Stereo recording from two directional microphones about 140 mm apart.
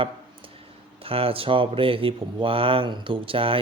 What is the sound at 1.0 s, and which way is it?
Speech, 40° right (ahead or behind).